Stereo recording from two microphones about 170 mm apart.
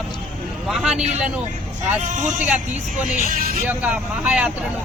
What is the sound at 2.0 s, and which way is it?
Speech, 45° right (ahead or behind).